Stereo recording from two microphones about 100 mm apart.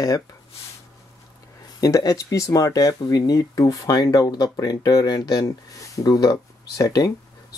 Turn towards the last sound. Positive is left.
turn(degrees=35)  # may be behind; listen again after turning